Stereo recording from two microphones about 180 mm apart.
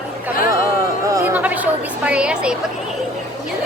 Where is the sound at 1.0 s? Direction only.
15° right (ahead or behind).